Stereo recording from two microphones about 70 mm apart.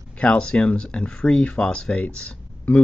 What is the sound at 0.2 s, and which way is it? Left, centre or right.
Speech, centre.